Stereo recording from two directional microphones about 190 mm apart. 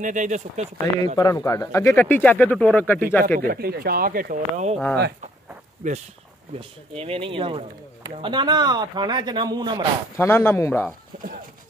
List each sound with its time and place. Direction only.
0.0 s speech: 40° right (ahead or behind)
1.1 s speech: 15° left (ahead or behind)
3.3 s speech: 50° right (ahead or behind)
5.8 s speech: 40° right (ahead or behind); by 9.8 s 20° right (ahead or behind)
10.1 s speech: 10° left (ahead or behind)